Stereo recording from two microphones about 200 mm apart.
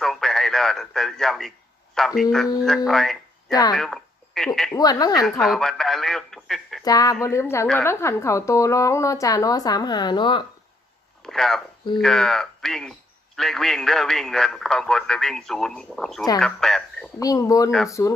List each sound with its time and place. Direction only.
0.0 s radio: centre (ahead or behind)
2.0 s speech: centre (ahead or behind)
2.9 s a sound: centre (ahead or behind)
4.7 s a woman's voice: 20° left (ahead or behind)
5.2 s a man's voice: centre (ahead or behind)
6.8 s a woman's voice: 20° left (ahead or behind)
11.2 s a man's voice: centre (ahead or behind)
17.2 s a woman's voice: 15° left (ahead or behind)